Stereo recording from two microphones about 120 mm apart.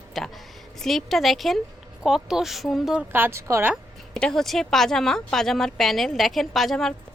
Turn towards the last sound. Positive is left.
turn(degrees=0)  # may be behind; listen again after turning